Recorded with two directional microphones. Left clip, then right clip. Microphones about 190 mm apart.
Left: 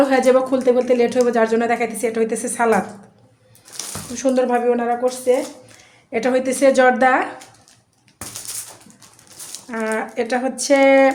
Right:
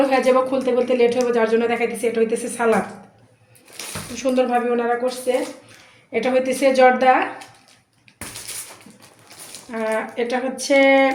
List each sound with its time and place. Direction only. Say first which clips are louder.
0.1 s speech: left 2 dB; 40° left (ahead or behind)
4.1 s speech: left 1 dB; 50° left (ahead or behind)
9.9 s speech: left 1 dB; 40° left (ahead or behind)